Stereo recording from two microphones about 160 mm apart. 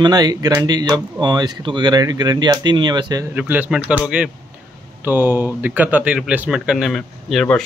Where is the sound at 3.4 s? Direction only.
10° right (ahead or behind).